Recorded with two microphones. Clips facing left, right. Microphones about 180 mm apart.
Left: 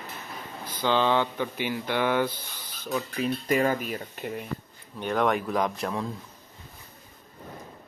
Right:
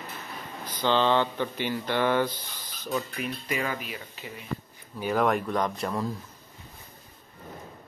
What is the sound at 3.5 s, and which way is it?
Speech, 45° left (ahead or behind).